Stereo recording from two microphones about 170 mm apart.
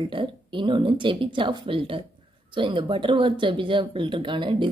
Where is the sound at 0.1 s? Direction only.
30° right (ahead or behind).